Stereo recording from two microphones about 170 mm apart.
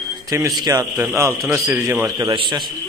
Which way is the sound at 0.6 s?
20° right (ahead or behind).